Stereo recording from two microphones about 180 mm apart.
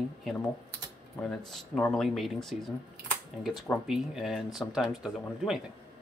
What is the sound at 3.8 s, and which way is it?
Speech, centre (ahead or behind).